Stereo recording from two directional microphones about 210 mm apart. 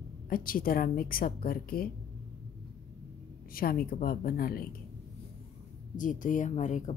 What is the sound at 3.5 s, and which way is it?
A woman's voice, 45° left (ahead or behind).